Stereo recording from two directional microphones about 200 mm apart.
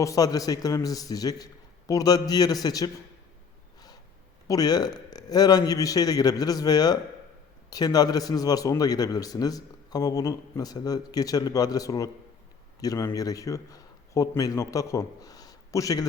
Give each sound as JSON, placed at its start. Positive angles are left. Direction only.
{"t": 0.0, "sound": "a man's voice", "side_deg": 15}
{"t": 4.4, "sound": "a man's voice", "side_deg": 20}